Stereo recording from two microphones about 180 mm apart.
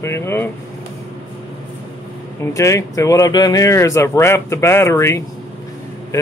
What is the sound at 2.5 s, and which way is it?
Speech, 15° left (ahead or behind).